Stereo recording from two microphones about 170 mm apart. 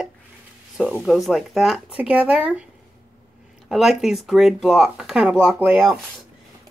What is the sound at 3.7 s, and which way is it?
Speech, centre (ahead or behind).